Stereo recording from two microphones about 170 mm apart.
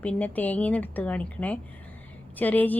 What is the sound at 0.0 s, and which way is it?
Speech, 10° left (ahead or behind).